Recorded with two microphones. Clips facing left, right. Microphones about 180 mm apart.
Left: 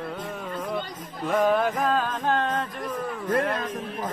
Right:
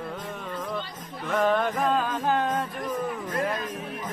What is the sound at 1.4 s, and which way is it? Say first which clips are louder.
Music: left 1 dB; 5° left (ahead or behind).